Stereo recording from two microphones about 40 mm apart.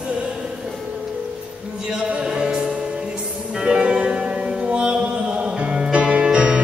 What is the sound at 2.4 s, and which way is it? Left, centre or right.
Music, right.